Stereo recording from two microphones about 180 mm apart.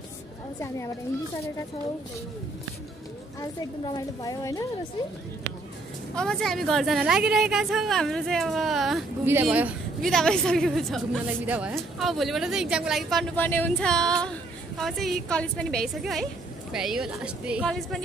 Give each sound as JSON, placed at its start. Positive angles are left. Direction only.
{"t": 3.3, "sound": "a woman's voice", "side_deg": 20}
{"t": 6.1, "sound": "speech", "side_deg": 5}
{"t": 9.2, "sound": "speech", "side_deg": -10}
{"t": 11.4, "sound": "speech", "side_deg": -10}